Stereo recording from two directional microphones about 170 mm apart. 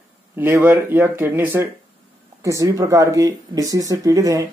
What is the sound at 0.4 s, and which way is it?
Speech, 10° right (ahead or behind).